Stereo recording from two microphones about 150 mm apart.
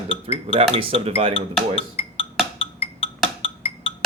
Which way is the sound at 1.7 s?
40° left (ahead or behind).